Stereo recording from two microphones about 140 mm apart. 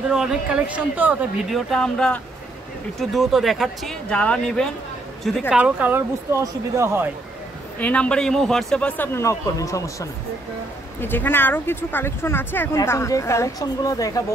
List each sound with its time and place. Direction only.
0.1 s speech: 5° right (ahead or behind)
1.5 s speech: 5° left (ahead or behind)
5.5 s speech: 10° right (ahead or behind)
7.8 s speech: 10° left (ahead or behind); by 14.2 s 25° left (ahead or behind)